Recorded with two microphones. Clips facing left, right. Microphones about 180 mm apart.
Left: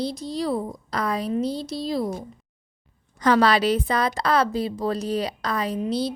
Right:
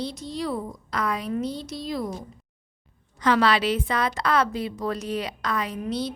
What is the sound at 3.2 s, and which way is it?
A woman's voice, 40° left (ahead or behind).